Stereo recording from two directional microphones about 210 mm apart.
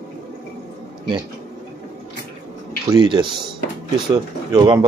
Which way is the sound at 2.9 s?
20° right (ahead or behind).